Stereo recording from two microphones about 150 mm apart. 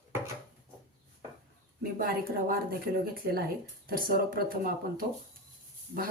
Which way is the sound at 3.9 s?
70° right (ahead or behind).